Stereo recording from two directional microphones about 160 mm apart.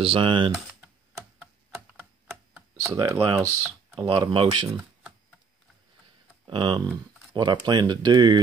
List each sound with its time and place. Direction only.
0.0 s speech: 35° right (ahead or behind)
2.5 s speech: 20° right (ahead or behind)
4.3 s speech: 30° right (ahead or behind)
6.4 s speech: 30° right (ahead or behind)